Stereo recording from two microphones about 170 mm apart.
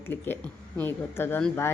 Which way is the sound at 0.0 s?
10° left (ahead or behind).